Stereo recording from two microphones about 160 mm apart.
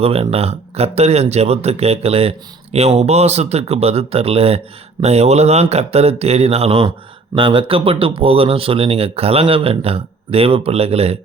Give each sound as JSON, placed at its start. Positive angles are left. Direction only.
{"t": 0.0, "sound": "speech", "side_deg": -40}